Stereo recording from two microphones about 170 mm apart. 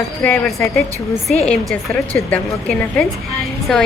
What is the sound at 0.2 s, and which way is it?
Speech, 10° left (ahead or behind).